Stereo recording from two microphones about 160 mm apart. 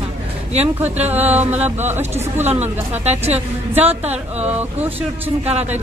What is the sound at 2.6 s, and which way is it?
A woman's voice, 40° right (ahead or behind).